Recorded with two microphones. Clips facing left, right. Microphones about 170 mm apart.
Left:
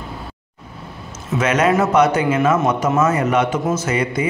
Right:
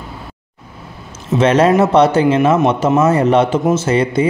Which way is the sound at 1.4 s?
30° right (ahead or behind).